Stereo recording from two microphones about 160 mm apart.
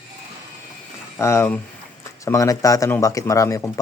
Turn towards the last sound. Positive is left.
turn(degrees=20)  # may be behind; listen again after turning